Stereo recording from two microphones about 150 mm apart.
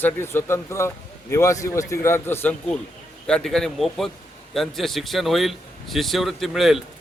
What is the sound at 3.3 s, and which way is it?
A man's voice, 5° left (ahead or behind).